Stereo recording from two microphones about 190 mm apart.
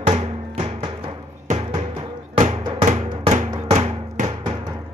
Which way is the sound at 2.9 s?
40° right (ahead or behind).